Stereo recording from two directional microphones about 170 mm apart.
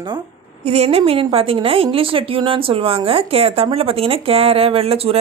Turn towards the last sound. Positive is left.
turn(degrees=-35)  # may be behind; listen again after turning